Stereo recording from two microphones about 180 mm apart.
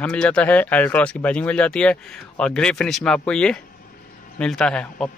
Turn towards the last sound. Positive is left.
turn(degrees=5)  # may be behind; listen again after turning